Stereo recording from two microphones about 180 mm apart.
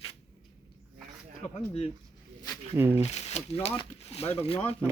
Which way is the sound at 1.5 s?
35° left (ahead or behind).